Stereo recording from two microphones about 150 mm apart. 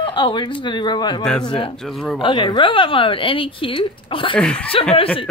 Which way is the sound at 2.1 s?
35° left (ahead or behind).